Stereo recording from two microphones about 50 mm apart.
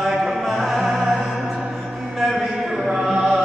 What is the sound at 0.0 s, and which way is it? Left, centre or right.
Music, centre.